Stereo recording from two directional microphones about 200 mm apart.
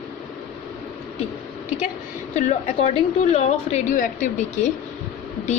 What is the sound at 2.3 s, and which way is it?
A woman's voice, 35° left (ahead or behind).